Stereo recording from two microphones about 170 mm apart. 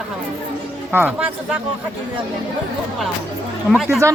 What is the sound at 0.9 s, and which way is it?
Speech, 10° right (ahead or behind).